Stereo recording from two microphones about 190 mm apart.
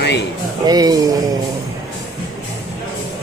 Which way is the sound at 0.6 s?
20° right (ahead or behind).